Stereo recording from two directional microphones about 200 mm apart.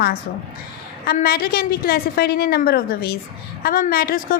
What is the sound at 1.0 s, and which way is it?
A woman's voice, 50° left (ahead or behind).